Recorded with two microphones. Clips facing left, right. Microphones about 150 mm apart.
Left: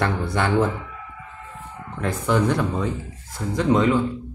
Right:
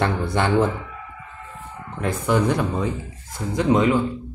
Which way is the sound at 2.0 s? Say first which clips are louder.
Right 1 dB; 15° right (ahead or behind).